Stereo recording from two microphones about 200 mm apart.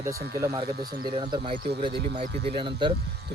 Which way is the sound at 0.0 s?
15° right (ahead or behind).